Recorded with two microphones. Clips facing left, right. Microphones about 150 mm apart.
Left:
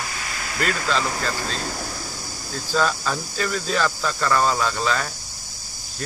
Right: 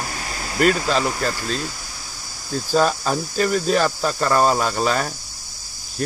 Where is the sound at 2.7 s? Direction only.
35° right (ahead or behind).